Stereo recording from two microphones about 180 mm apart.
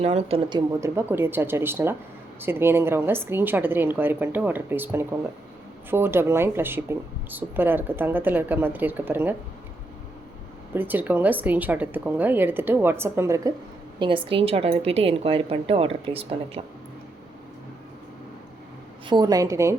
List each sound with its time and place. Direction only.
0.0 s a woman's voice: 35° right (ahead or behind)
0.8 s speech: 15° right (ahead or behind)
10.8 s speech: 10° right (ahead or behind)
14.3 s a woman's voice: 30° right (ahead or behind)
19.0 s a woman's voice: 20° right (ahead or behind)